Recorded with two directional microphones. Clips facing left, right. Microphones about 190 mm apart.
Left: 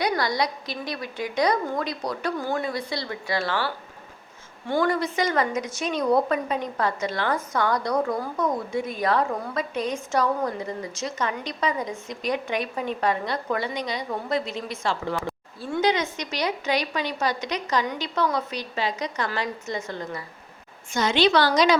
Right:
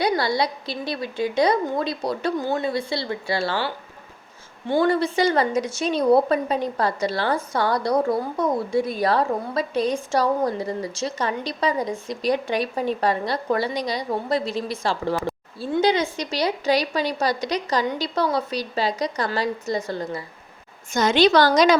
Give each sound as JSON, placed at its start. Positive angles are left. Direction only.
{"t": 0.0, "sound": "a woman's voice", "side_deg": -30}
{"t": 4.7, "sound": "a woman's voice", "side_deg": -30}